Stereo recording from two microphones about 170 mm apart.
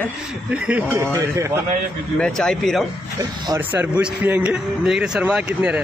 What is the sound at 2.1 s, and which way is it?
Speech, 5° left (ahead or behind).